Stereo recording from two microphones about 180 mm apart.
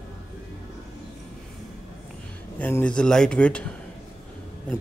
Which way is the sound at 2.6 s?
10° left (ahead or behind).